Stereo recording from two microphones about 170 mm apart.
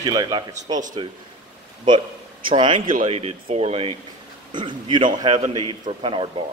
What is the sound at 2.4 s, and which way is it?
Speech, 30° right (ahead or behind).